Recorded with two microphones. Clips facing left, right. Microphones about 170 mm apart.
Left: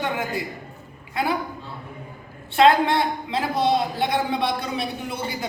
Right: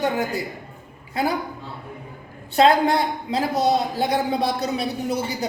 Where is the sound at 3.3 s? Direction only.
40° right (ahead or behind).